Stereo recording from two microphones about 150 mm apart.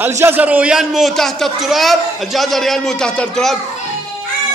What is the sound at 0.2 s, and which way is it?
A child's voice, 10° right (ahead or behind).